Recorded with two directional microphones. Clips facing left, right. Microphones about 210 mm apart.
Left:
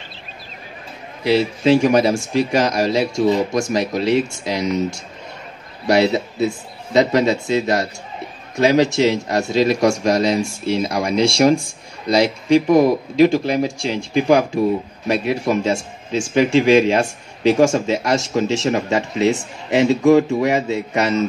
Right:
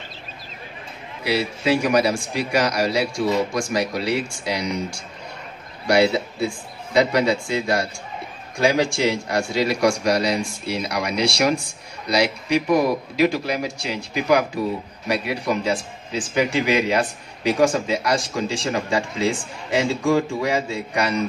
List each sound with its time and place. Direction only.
1.2 s speech: 25° left (ahead or behind)